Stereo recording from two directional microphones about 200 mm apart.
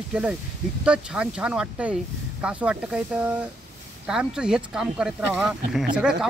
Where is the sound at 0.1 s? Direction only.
5° right (ahead or behind).